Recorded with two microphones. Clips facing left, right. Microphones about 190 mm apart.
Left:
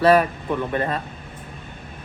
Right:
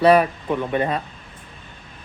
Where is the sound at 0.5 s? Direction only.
15° right (ahead or behind).